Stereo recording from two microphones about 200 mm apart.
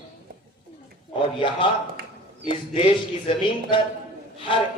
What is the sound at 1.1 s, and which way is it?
Speech, 25° left (ahead or behind).